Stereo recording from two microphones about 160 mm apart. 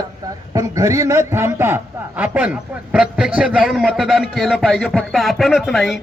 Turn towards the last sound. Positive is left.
turn(degrees=0)  # may be behind; listen again after turning